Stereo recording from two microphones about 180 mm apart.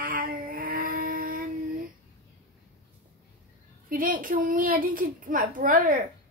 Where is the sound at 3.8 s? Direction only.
50° right (ahead or behind).